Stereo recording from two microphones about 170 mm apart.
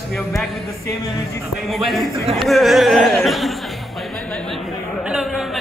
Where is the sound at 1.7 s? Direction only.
Centre (ahead or behind).